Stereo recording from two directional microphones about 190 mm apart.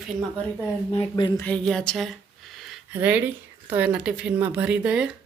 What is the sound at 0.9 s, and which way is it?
Speech, 25° left (ahead or behind).